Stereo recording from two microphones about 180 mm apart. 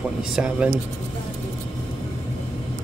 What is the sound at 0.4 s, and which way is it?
Speech, 5° right (ahead or behind).